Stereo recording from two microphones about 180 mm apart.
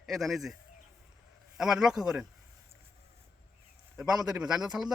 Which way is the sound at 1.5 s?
5° right (ahead or behind).